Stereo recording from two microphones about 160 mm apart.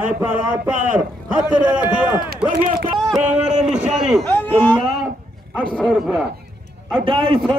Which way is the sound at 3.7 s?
50° right (ahead or behind).